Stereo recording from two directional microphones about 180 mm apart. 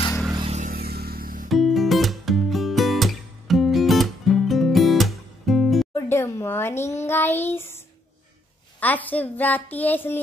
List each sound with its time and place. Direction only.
0.5 s vehicle: 40° right (ahead or behind)
0.7 s vehicle: 60° right (ahead or behind)
1.5 s music: centre (ahead or behind)
5.9 s a child's voice: 15° left (ahead or behind)